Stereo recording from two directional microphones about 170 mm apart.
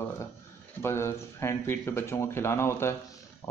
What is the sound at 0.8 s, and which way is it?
A man's voice, 15° left (ahead or behind).